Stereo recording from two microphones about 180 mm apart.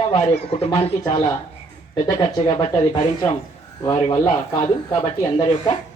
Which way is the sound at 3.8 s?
25° left (ahead or behind).